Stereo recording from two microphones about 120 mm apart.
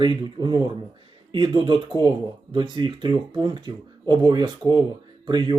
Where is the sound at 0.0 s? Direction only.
40° right (ahead or behind).